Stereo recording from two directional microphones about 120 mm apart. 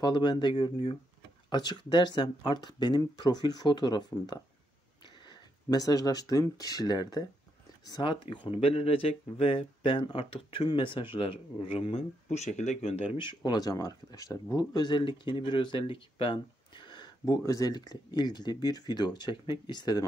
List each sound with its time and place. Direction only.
0.0 s speech: 40° left (ahead or behind)
12.3 s speech: 80° left; by 20.1 s 35° left (ahead or behind)